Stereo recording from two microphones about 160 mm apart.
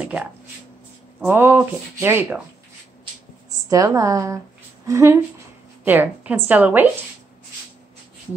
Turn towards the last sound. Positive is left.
turn(degrees=-10)  # may be behind; listen again after turning